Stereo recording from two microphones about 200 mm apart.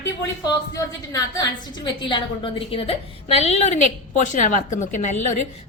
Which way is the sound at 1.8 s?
25° left (ahead or behind).